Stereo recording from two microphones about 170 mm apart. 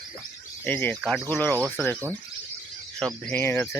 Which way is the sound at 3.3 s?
15° left (ahead or behind).